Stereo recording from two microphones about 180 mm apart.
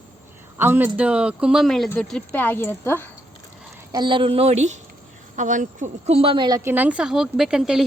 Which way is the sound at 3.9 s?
25° right (ahead or behind).